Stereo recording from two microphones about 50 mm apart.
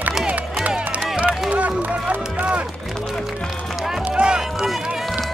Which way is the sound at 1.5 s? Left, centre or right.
Right.